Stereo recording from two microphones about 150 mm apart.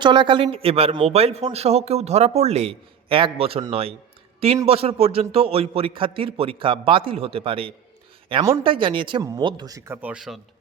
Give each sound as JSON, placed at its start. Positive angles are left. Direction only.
{"t": 0.0, "sound": "a man's voice", "side_deg": -30}